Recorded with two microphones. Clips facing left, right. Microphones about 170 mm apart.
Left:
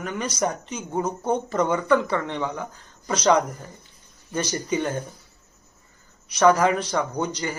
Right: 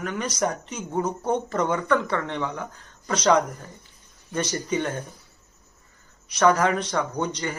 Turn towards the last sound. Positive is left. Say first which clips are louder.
# left 1 dB
turn(degrees=0)  # may be behind; listen again after turning